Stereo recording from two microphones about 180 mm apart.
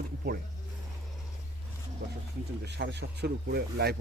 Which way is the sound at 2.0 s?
75° right (ahead or behind).